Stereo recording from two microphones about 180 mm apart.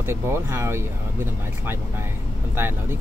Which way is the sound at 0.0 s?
15° right (ahead or behind).